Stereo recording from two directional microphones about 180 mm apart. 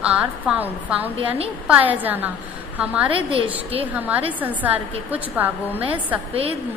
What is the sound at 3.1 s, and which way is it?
Speech, 30° right (ahead or behind).